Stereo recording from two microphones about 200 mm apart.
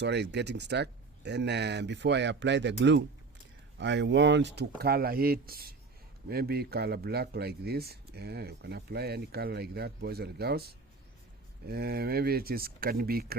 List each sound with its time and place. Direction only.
0.0 s speech: 60° right (ahead or behind)